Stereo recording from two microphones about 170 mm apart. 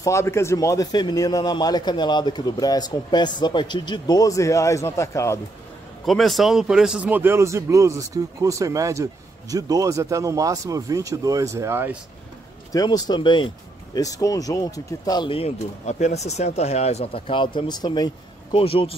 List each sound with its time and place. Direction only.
0.0 s speech: 15° left (ahead or behind)
6.0 s a man's voice: centre (ahead or behind)
12.7 s speech: 20° left (ahead or behind)